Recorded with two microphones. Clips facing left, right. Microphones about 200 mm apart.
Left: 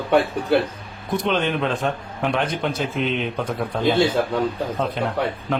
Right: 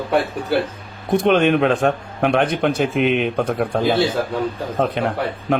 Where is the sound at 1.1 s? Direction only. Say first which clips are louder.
Right 7 dB; 60° right (ahead or behind).